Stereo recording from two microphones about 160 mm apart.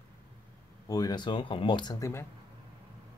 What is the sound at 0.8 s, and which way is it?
Speech, 25° left (ahead or behind).